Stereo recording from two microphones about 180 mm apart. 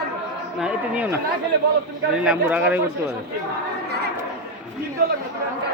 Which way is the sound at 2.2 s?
5° right (ahead or behind).